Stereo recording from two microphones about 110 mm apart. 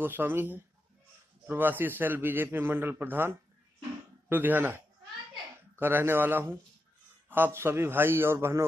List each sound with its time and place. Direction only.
0.0 s a man's voice: 20° right (ahead or behind)